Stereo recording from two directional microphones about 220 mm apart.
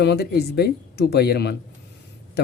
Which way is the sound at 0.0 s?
50° left (ahead or behind).